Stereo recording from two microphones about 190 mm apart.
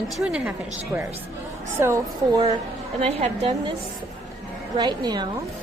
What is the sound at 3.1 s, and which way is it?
Speech, 30° right (ahead or behind).